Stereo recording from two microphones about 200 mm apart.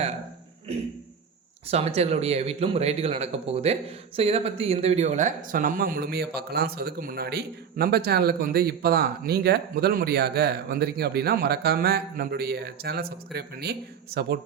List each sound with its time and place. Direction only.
1.6 s speech: 30° right (ahead or behind); by 14.3 s 55° right (ahead or behind)